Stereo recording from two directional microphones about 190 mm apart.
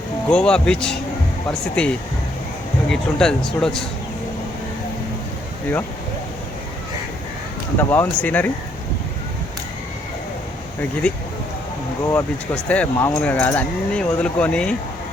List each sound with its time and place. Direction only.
0.3 s speech: 5° left (ahead or behind)
2.9 s speech: 5° left (ahead or behind)
7.8 s speech: 10° left (ahead or behind)
12.0 s speech: 5° left (ahead or behind)